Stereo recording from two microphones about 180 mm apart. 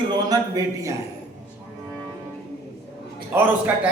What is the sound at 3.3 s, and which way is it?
Speech, 10° right (ahead or behind).